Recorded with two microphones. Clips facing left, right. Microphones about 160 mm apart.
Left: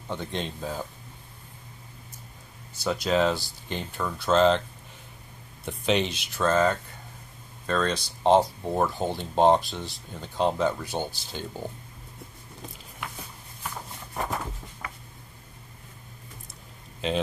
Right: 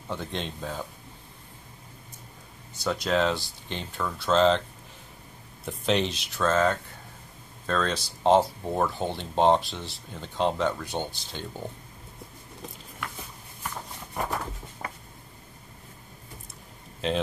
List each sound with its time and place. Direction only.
0.1 s speech: centre (ahead or behind)
2.8 s speech: centre (ahead or behind)
5.7 s speech: centre (ahead or behind)
14.8 s a sound: 35° right (ahead or behind)